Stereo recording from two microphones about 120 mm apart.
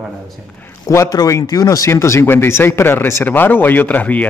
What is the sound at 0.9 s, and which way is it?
Speech, 30° left (ahead or behind).